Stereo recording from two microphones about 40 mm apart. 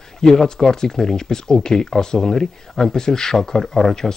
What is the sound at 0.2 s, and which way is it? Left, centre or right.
Speech, centre.